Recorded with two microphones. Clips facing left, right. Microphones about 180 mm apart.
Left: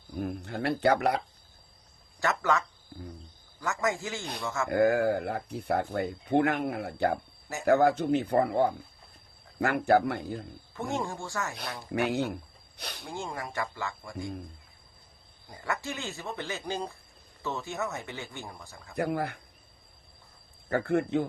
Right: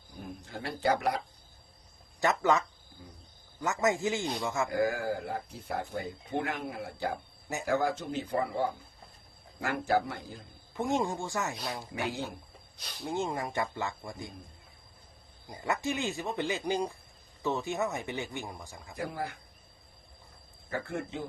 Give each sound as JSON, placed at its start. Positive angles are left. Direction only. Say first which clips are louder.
{"t": 0.2, "sound": "speech", "louder": "left 8 dB", "side_deg": 65}
{"t": 2.2, "sound": "speech", "louder": "right 1 dB", "side_deg": -20}
{"t": 4.7, "sound": "speech", "louder": "left 10 dB", "side_deg": 65}
{"t": 10.8, "sound": "speech", "louder": "right 3 dB", "side_deg": -20}
{"t": 11.9, "sound": "speech", "louder": "left 10 dB", "side_deg": 65}
{"t": 13.1, "sound": "speech", "louder": "right 5 dB", "side_deg": -20}
{"t": 15.4, "sound": "speech", "louder": "right 2 dB", "side_deg": -20}
{"t": 18.9, "sound": "speech", "louder": "left 6 dB", "side_deg": 65}
{"t": 20.7, "sound": "speech", "louder": "left 9 dB", "side_deg": 60}